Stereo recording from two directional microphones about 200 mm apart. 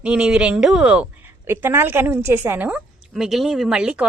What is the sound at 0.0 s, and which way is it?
A woman's voice, 5° right (ahead or behind).